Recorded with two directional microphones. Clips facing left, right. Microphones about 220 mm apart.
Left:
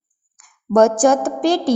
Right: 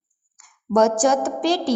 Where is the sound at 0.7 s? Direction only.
50° left (ahead or behind).